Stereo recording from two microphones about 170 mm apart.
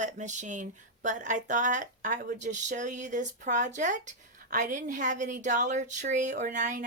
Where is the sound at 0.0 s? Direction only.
45° right (ahead or behind).